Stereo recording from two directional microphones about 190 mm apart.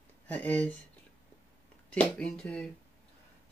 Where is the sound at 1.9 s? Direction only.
5° left (ahead or behind).